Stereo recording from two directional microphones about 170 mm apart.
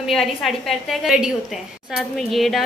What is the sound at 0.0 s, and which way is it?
A woman's voice, centre (ahead or behind).